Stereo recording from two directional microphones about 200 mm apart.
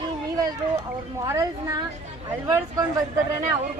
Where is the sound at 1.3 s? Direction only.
15° right (ahead or behind).